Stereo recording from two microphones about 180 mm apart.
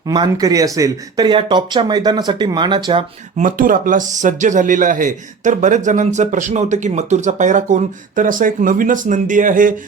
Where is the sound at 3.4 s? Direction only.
50° right (ahead or behind).